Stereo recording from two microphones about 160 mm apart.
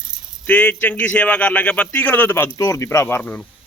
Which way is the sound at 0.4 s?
10° left (ahead or behind).